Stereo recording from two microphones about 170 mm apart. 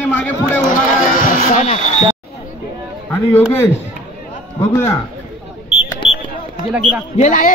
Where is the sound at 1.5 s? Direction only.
45° left (ahead or behind).